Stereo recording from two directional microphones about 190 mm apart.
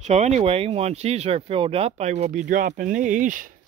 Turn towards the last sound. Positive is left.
turn(degrees=-45)  # may be behind; listen again after turning